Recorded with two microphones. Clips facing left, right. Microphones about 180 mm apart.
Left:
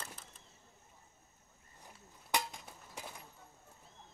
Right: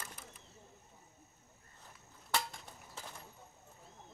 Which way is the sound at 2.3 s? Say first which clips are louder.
Left 1 dB; 15° left (ahead or behind).